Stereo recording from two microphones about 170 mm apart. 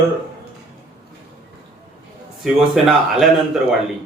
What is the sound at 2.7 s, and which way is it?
Speech, centre (ahead or behind).